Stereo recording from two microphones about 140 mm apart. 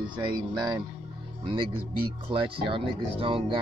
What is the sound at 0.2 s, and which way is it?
Speech, 30° right (ahead or behind).